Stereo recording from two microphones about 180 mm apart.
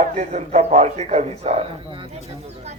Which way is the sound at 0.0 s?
40° right (ahead or behind).